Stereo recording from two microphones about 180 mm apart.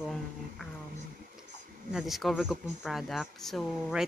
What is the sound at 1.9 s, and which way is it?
A woman's voice, 5° right (ahead or behind).